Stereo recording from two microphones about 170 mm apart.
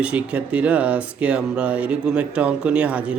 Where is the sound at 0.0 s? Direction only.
5° right (ahead or behind).